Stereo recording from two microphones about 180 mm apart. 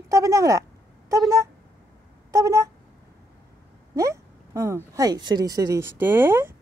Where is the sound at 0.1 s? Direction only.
15° right (ahead or behind).